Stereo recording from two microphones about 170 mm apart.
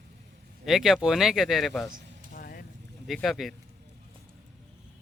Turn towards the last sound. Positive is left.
turn(degrees=0)  # may be behind; listen again after turning